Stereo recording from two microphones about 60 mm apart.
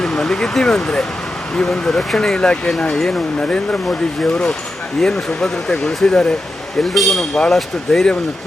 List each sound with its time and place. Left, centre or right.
0.0 s speech: centre